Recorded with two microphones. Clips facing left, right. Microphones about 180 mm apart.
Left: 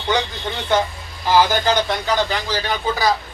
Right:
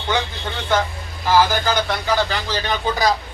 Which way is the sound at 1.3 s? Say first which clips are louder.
Left 1 dB; 15° left (ahead or behind).